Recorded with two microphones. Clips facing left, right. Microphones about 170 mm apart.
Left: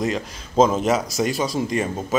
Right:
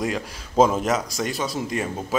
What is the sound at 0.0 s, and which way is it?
A man's voice, 10° right (ahead or behind).